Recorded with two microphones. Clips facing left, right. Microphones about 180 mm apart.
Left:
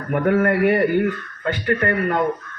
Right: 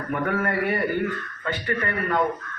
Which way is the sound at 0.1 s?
60° left (ahead or behind).